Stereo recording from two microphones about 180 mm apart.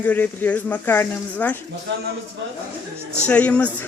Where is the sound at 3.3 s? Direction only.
5° left (ahead or behind).